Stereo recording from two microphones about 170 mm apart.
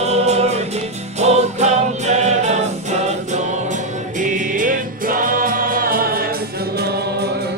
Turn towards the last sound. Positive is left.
turn(degrees=-70)  # may be behind; listen again after turning